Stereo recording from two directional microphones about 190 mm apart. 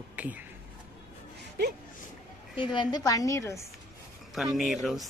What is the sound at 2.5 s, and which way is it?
A woman's voice, 25° left (ahead or behind).